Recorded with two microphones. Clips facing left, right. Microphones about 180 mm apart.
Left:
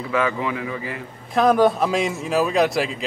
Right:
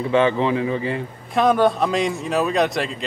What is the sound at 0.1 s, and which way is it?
Speech, 30° right (ahead or behind).